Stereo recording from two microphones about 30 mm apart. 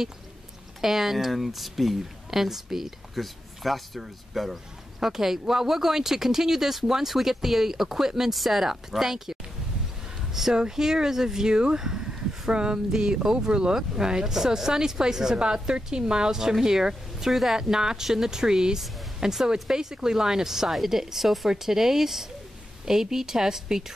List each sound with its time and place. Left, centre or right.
0.7 s speech: centre
10.4 s a sound: centre
10.8 s speech: centre
11.4 s speech: right
17.3 s speech: centre
17.6 s speech: right